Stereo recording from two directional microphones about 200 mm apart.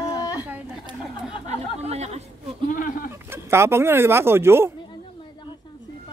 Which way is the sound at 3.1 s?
15° right (ahead or behind).